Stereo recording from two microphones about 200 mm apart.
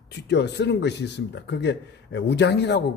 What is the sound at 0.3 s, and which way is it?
Speech, 60° left (ahead or behind).